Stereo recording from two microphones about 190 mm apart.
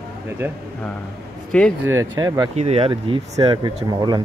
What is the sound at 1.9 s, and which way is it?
Speech, 15° right (ahead or behind).